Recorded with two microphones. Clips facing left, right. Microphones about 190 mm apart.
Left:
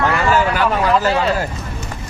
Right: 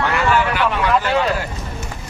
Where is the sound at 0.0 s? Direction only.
40° left (ahead or behind).